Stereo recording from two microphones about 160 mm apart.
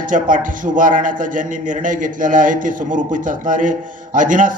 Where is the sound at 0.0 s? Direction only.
55° right (ahead or behind).